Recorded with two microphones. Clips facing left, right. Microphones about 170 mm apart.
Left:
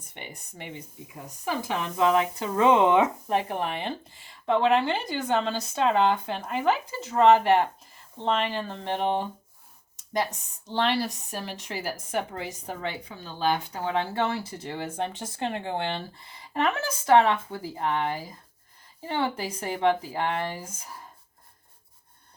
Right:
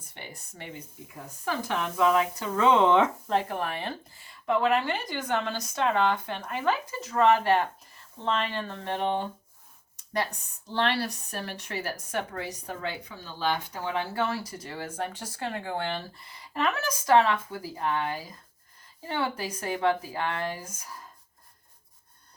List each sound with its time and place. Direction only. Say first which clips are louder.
0.1 s speech: left 2 dB; 20° left (ahead or behind)
10.7 s speech: left 2 dB; 15° left (ahead or behind)